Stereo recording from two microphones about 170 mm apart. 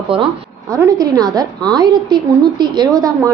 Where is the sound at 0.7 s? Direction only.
20° right (ahead or behind).